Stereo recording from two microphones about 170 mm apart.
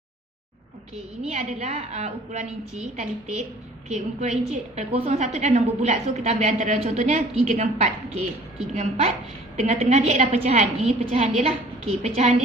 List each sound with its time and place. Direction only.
1.2 s a woman's voice: 45° right (ahead or behind)